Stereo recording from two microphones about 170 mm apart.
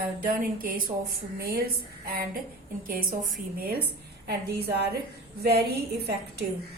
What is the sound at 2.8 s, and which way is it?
Speech, 55° right (ahead or behind).